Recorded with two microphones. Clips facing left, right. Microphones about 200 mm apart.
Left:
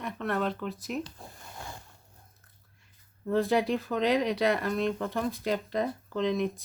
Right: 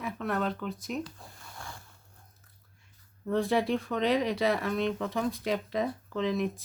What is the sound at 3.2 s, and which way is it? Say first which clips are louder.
Speech: left 1 dB; centre (ahead or behind).